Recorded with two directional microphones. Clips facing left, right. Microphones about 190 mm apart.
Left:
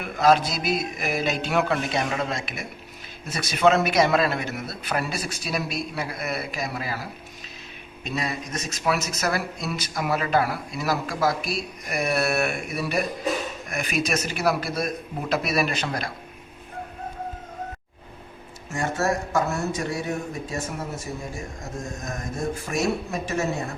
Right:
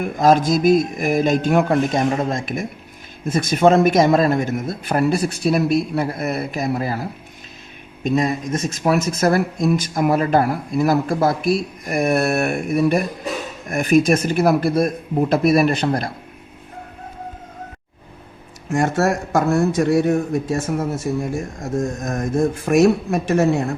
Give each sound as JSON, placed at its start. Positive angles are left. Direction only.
{"t": 0.0, "sound": "speech", "side_deg": -45}
{"t": 18.7, "sound": "speech", "side_deg": -55}
{"t": 22.0, "sound": "speech", "side_deg": -50}
{"t": 22.7, "sound": "speech", "side_deg": -65}